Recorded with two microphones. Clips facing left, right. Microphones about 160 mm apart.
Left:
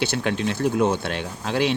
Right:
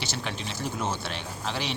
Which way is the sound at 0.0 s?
60° left (ahead or behind).